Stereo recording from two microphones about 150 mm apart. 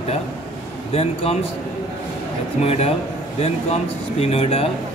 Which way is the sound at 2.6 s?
45° left (ahead or behind).